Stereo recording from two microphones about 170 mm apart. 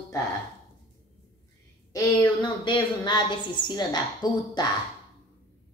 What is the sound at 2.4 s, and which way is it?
A woman's voice, 25° left (ahead or behind).